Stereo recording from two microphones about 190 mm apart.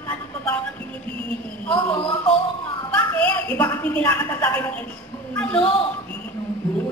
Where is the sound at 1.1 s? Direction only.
30° right (ahead or behind).